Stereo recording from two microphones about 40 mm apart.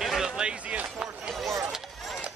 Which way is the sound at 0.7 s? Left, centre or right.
Right.